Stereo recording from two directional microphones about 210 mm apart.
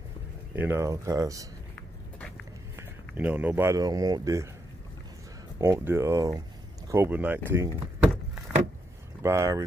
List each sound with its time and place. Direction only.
0.6 s speech: 10° right (ahead or behind)
2.7 s speech: 10° right (ahead or behind)
5.6 s speech: 10° right (ahead or behind)
9.2 s speech: 15° right (ahead or behind)